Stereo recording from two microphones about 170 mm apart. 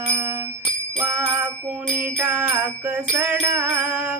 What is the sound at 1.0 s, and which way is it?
Music, 10° right (ahead or behind).